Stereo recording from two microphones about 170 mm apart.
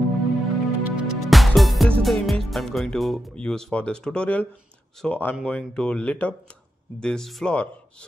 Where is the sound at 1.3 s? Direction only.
Centre (ahead or behind).